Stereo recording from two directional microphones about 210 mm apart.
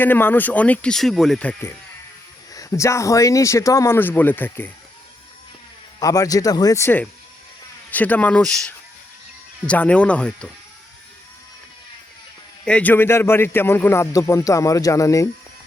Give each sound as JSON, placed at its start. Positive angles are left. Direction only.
{"t": 0.0, "sound": "a man's voice", "side_deg": 10}
{"t": 6.0, "sound": "a man's voice", "side_deg": 15}
{"t": 12.6, "sound": "a man's voice", "side_deg": 5}